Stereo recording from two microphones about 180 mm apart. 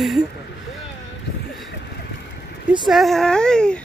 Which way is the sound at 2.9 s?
Centre (ahead or behind).